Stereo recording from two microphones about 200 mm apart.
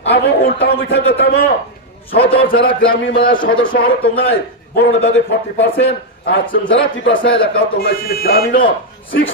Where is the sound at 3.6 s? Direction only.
45° left (ahead or behind).